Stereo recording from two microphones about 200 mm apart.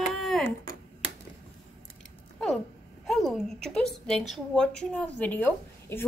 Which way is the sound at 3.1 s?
Centre (ahead or behind).